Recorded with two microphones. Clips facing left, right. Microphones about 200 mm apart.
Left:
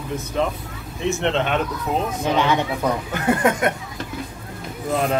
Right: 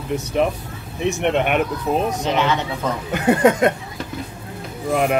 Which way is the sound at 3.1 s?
20° right (ahead or behind).